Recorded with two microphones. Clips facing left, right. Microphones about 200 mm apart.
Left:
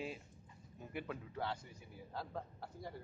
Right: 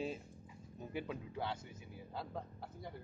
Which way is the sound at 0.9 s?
15° right (ahead or behind).